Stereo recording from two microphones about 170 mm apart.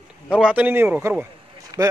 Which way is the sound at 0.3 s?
5° right (ahead or behind).